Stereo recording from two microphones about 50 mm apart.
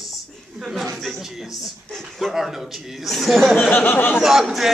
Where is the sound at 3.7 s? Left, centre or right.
Left.